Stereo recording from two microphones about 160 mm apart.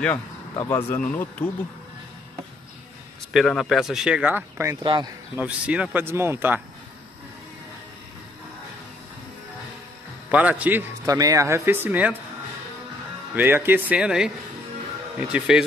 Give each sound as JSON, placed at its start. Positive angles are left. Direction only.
{"t": 0.6, "sound": "speech", "side_deg": 15}
{"t": 3.3, "sound": "speech", "side_deg": 0}
{"t": 4.8, "sound": "speech", "side_deg": -30}
{"t": 5.3, "sound": "a man's voice", "side_deg": -10}
{"t": 10.3, "sound": "a man's voice", "side_deg": -10}
{"t": 13.4, "sound": "a man's voice", "side_deg": -15}